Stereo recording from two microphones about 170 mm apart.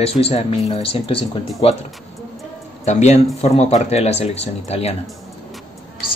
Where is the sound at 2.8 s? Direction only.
40° left (ahead or behind).